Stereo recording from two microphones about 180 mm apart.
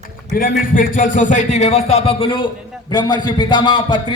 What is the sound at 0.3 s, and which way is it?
A man's voice, 50° left (ahead or behind).